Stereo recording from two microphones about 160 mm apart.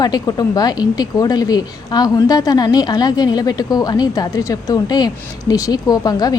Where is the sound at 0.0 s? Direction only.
25° left (ahead or behind).